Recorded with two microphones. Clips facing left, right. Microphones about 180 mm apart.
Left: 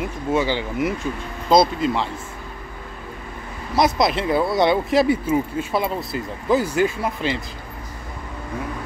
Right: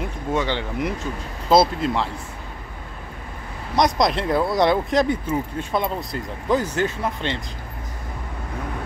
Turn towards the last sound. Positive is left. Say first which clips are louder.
# left 2 dB
turn(degrees=10)  # may be behind; listen again after turning